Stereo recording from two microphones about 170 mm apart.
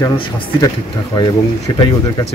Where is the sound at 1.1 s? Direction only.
20° left (ahead or behind).